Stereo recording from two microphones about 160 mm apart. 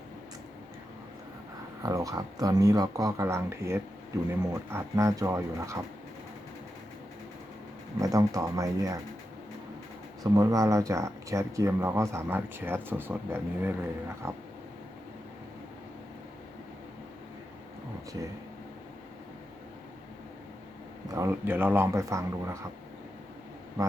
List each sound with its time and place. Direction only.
1.8 s speech: 20° right (ahead or behind)
7.9 s speech: 20° right (ahead or behind)
10.2 s speech: 20° right (ahead or behind)
21.1 s speech: 15° right (ahead or behind)